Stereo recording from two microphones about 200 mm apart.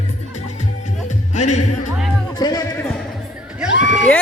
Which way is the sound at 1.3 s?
35° left (ahead or behind).